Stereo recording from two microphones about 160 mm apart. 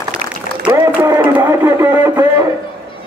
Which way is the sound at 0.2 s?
55° right (ahead or behind).